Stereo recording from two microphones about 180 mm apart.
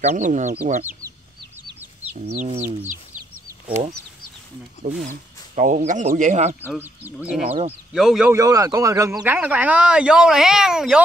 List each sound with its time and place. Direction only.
0.0 s speech: 40° right (ahead or behind)
2.1 s speech: 40° right (ahead or behind)
4.9 s speech: 45° right (ahead or behind)
6.6 s speech: 10° right (ahead or behind)
7.4 s speech: 35° right (ahead or behind)
7.9 s speech: centre (ahead or behind)
8.3 s speech: 20° right (ahead or behind); by 11.0 s 5° right (ahead or behind)